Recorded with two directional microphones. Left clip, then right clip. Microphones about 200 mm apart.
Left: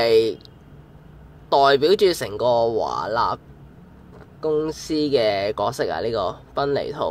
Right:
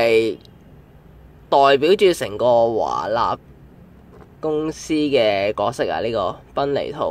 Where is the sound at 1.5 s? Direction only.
15° right (ahead or behind).